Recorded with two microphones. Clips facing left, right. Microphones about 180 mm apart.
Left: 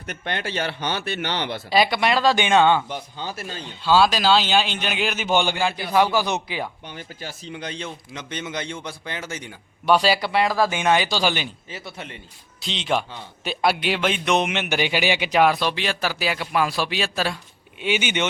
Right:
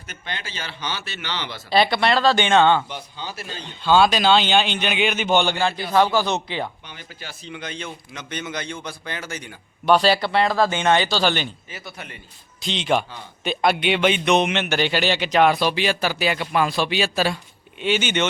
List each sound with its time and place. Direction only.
0.0 s a man's voice: 60° left (ahead or behind)
1.7 s speech: 10° left (ahead or behind)
2.9 s speech: 45° left (ahead or behind)
3.6 s a man's voice: 5° left (ahead or behind)
6.8 s a man's voice: 45° left (ahead or behind); by 9.6 s 20° left (ahead or behind)
9.8 s speech: 10° left (ahead or behind)
11.9 s a man's voice: 25° left (ahead or behind)
12.5 s a man's voice: centre (ahead or behind)
17.8 s speech: 10° left (ahead or behind)